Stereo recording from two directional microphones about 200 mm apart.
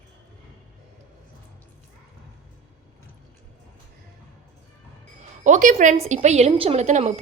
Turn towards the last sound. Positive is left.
turn(degrees=-35)  # may be behind; listen again after turning